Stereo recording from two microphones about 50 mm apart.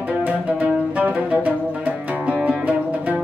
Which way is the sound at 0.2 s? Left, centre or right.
Right.